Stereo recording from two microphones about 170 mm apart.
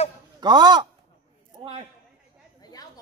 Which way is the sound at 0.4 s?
25° right (ahead or behind).